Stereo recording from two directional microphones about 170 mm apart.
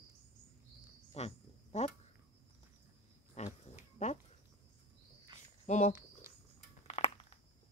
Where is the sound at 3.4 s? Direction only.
40° left (ahead or behind).